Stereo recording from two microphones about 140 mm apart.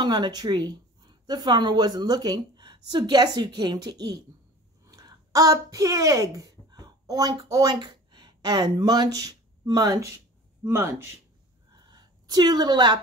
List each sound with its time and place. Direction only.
0.0 s speech: 30° right (ahead or behind)
4.8 s a sound: 25° right (ahead or behind)
7.4 s speech: 25° right (ahead or behind)
11.9 s a woman's voice: 30° right (ahead or behind)